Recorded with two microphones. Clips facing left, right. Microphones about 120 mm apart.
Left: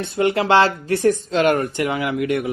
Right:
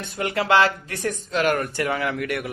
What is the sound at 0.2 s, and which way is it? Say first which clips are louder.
Speech: left 4 dB; 25° left (ahead or behind).